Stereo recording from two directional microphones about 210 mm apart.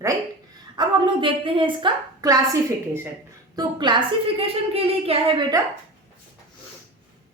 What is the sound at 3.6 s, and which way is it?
A woman's voice, 20° right (ahead or behind).